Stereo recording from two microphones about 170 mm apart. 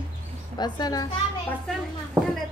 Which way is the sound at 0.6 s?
25° left (ahead or behind).